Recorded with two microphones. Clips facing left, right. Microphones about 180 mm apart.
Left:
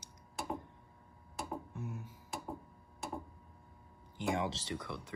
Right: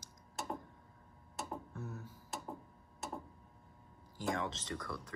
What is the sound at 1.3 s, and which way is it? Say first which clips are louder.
Tick-tock: left 2 dB; centre (ahead or behind).